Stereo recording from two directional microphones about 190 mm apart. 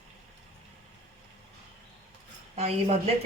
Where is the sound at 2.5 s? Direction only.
35° right (ahead or behind).